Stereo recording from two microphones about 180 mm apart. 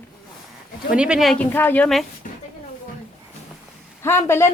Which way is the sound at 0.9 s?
5° right (ahead or behind).